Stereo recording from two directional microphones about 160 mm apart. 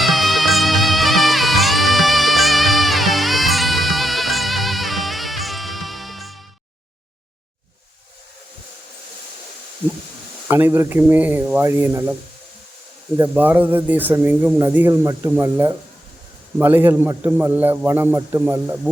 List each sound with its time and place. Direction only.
0.0 s music: centre (ahead or behind)
10.5 s a man's voice: 15° right (ahead or behind)
13.1 s a man's voice: 15° right (ahead or behind)